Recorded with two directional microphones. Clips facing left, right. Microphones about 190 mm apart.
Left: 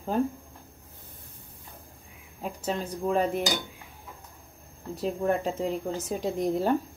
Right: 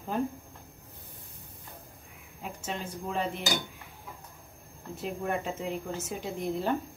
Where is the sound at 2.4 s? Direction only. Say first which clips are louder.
Left 6 dB; 40° left (ahead or behind).